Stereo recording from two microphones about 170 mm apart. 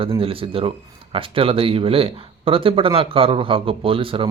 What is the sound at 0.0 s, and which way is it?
Speech, 35° right (ahead or behind).